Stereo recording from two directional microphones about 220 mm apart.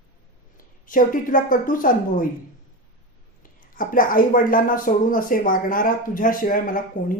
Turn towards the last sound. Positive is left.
turn(degrees=35)  # may be behind; listen again after turning